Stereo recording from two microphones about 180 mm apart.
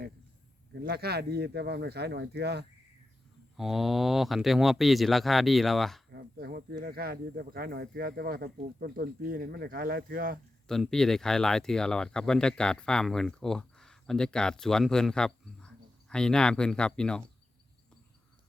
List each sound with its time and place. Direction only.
0.8 s speech: 60° right (ahead or behind)
3.6 s speech: centre (ahead or behind)
6.1 s speech: 60° right (ahead or behind)
10.7 s speech: 5° left (ahead or behind)